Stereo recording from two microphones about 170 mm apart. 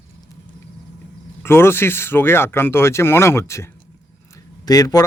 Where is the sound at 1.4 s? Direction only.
15° left (ahead or behind).